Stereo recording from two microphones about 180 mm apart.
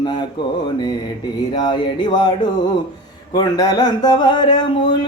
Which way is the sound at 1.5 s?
25° left (ahead or behind).